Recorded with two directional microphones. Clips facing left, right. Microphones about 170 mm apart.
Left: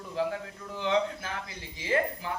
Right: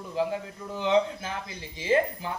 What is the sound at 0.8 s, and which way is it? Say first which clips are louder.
Speech: right 4 dB; 20° right (ahead or behind).